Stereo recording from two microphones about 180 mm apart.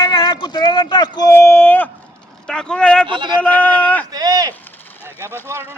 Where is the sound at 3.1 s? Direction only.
25° right (ahead or behind).